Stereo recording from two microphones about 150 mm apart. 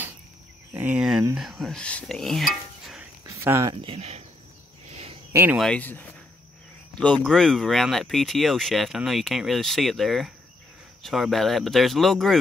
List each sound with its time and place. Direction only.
0.7 s cricket: 10° right (ahead or behind)
1.3 s speech: centre (ahead or behind)
3.3 s a sound: 20° right (ahead or behind)
3.8 s speech: 40° right (ahead or behind)
5.3 s speech: 15° right (ahead or behind)
5.6 s speech: 10° left (ahead or behind)